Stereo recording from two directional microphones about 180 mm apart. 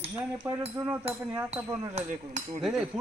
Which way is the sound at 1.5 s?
40° right (ahead or behind).